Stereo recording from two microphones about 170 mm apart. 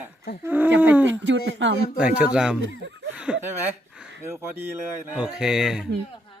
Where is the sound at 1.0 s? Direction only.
90° right.